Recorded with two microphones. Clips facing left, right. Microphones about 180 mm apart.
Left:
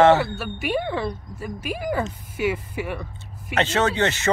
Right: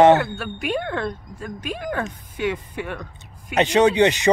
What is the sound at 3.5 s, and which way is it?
Speech, 15° right (ahead or behind).